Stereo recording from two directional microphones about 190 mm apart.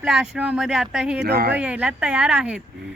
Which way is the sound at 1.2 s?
60° right (ahead or behind).